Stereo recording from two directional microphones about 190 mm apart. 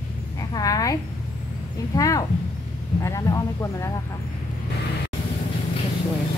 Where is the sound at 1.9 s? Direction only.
20° left (ahead or behind).